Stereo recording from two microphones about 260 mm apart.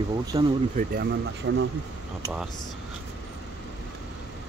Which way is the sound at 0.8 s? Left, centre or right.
Right.